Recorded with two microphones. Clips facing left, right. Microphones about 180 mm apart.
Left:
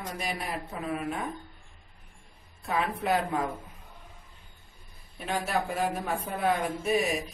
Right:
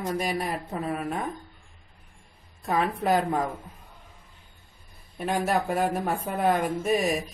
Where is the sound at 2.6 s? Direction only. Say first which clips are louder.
Right 4 dB; 40° right (ahead or behind).